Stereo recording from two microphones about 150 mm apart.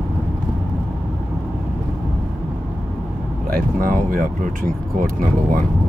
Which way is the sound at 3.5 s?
70° right (ahead or behind).